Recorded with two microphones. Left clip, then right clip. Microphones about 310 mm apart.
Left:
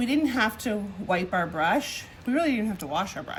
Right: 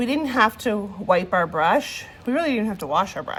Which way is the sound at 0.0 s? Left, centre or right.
Centre.